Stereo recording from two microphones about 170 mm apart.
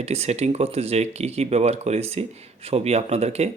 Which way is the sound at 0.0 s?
40° right (ahead or behind).